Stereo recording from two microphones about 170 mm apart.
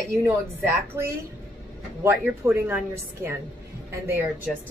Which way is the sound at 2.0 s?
10° right (ahead or behind).